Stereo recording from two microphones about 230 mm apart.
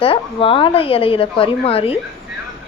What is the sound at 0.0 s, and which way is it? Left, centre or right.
Speech, left.